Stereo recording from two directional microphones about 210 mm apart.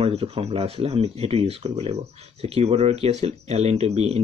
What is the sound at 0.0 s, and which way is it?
Speech, 25° right (ahead or behind).